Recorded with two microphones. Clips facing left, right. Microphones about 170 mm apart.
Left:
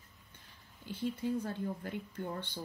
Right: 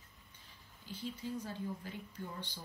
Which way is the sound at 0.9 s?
55° left (ahead or behind).